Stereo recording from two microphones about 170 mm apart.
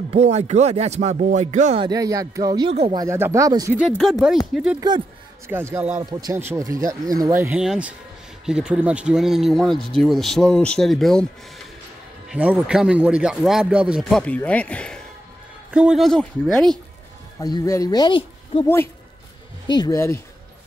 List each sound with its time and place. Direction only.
0.1 s speech: 40° right (ahead or behind)
1.8 s speech: 20° right (ahead or behind)
3.7 s speech: 5° right (ahead or behind)
4.7 s speech: 25° right (ahead or behind)
5.5 s speech: 15° right (ahead or behind); by 15.0 s 5° left (ahead or behind)
15.7 s speech: 5° right (ahead or behind)
17.4 s speech: 20° left (ahead or behind)
19.7 s speech: 20° left (ahead or behind)